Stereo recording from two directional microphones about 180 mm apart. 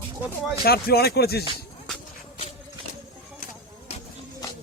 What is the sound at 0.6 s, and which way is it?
Speech, 60° left (ahead or behind).